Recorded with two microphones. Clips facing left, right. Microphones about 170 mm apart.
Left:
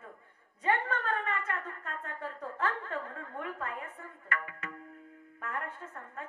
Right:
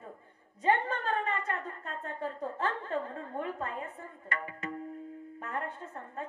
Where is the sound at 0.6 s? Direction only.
30° right (ahead or behind).